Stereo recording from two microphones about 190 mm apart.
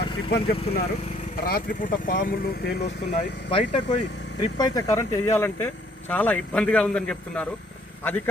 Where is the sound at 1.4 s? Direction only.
50° left (ahead or behind).